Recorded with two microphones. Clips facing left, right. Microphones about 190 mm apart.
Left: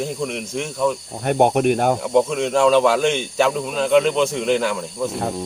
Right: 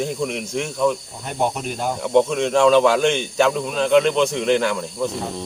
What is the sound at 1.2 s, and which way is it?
Speech, 60° left (ahead or behind).